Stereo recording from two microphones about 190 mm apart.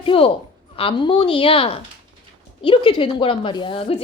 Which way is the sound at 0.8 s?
25° left (ahead or behind).